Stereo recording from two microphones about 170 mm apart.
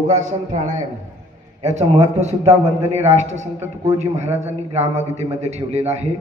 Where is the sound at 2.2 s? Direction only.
40° right (ahead or behind).